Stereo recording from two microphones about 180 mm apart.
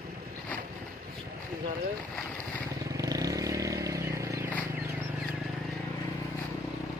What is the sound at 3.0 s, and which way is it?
Vehicle, 20° right (ahead or behind).